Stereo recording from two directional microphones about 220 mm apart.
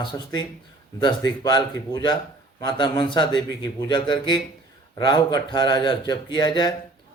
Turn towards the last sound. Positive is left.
turn(degrees=20)  # may be behind; listen again after turning